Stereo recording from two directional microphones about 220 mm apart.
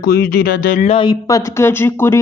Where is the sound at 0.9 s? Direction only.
15° left (ahead or behind).